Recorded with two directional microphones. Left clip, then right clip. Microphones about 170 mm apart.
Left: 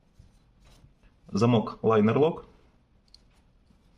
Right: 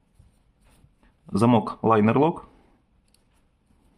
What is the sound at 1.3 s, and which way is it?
Speech, 30° right (ahead or behind).